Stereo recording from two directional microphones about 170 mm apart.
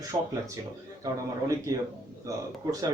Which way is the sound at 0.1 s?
20° right (ahead or behind).